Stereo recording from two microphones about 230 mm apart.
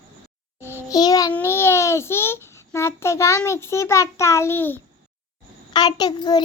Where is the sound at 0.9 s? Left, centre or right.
Centre.